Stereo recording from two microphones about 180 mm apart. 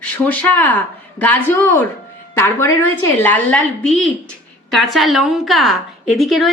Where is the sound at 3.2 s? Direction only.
10° left (ahead or behind).